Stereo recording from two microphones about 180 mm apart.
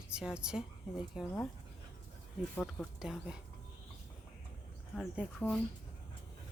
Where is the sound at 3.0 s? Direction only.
5° right (ahead or behind).